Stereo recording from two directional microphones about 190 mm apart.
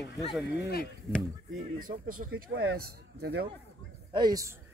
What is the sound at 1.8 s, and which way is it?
A man's voice, 45° right (ahead or behind).